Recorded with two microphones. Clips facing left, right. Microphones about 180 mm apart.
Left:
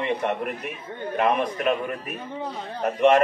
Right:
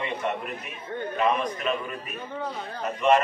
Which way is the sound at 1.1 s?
60° left (ahead or behind).